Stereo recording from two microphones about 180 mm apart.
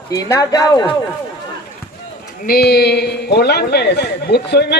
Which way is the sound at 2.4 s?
60° left (ahead or behind).